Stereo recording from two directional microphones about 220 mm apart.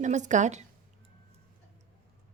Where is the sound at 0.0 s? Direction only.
35° right (ahead or behind).